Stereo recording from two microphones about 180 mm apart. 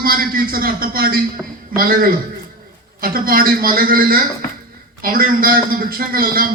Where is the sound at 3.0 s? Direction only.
55° right (ahead or behind).